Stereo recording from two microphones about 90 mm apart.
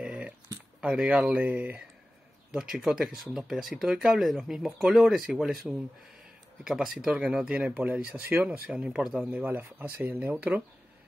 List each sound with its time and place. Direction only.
0.0 s a sound: 10° right (ahead or behind)
0.7 s speech: 10° right (ahead or behind)
2.5 s speech: 5° right (ahead or behind)
9.3 s speech: 20° right (ahead or behind)